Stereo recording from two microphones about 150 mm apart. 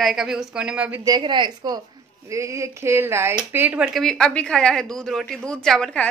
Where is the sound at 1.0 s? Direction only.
30° right (ahead or behind).